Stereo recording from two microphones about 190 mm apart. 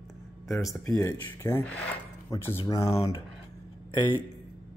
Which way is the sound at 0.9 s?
15° left (ahead or behind).